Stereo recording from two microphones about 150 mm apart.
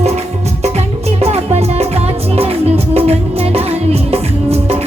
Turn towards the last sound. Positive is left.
turn(degrees=-40)  # may be behind; listen again after turning